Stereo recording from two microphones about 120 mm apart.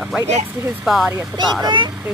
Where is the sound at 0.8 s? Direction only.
Centre (ahead or behind).